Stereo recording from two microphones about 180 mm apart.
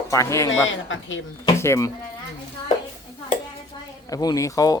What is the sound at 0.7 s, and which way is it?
Speech, 90° left.